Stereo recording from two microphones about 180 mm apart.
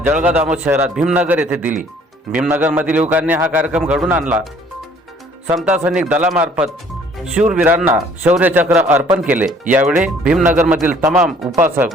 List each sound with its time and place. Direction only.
0.0 s speech: 10° right (ahead or behind)
5.5 s speech: 10° right (ahead or behind)